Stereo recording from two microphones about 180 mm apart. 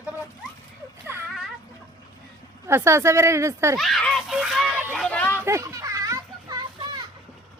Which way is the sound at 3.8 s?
Centre (ahead or behind).